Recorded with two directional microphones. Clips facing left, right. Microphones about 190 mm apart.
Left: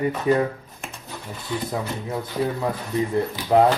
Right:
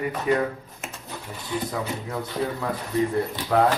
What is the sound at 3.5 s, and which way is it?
Speech, 20° left (ahead or behind).